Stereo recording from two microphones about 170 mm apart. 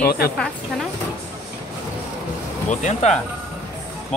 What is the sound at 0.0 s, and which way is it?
Speech, 65° left (ahead or behind).